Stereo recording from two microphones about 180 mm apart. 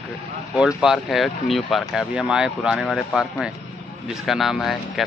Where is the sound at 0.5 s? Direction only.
5° right (ahead or behind).